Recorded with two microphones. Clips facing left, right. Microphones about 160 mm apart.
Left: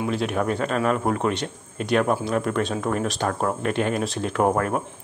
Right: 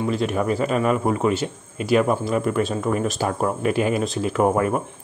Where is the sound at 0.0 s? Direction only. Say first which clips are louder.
Right 2 dB; centre (ahead or behind).